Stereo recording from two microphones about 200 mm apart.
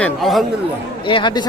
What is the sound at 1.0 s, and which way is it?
Speech, 25° left (ahead or behind).